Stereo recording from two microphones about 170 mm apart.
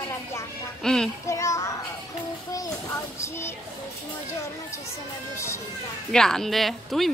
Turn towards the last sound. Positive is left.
turn(degrees=0)  # may be behind; listen again after turning